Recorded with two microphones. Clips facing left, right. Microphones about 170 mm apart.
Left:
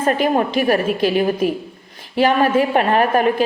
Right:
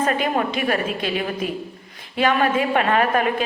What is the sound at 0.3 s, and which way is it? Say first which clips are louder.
A woman's voice: left 5 dB; 40° left (ahead or behind).